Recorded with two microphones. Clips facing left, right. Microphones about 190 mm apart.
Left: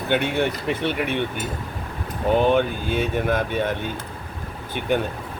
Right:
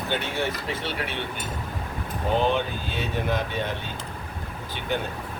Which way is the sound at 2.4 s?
50° left (ahead or behind).